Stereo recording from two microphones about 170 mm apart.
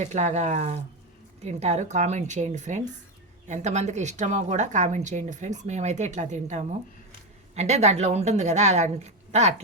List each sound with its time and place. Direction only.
0.0 s a woman's voice: 45° right (ahead or behind)